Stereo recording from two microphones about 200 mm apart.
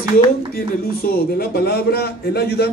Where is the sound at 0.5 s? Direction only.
50° left (ahead or behind).